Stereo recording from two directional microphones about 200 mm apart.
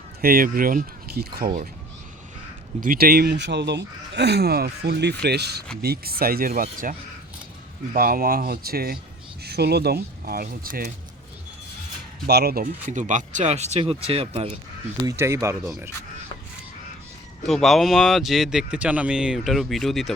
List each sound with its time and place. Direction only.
0.2 s speech: 45° right (ahead or behind)
2.8 s speech: 50° right (ahead or behind)
7.9 s speech: 45° right (ahead or behind)
12.2 s speech: 50° right (ahead or behind); by 14.6 s 30° right (ahead or behind)
15.0 s speech: 15° right (ahead or behind)
15.6 s speech: 5° right (ahead or behind)
17.4 s speech: centre (ahead or behind)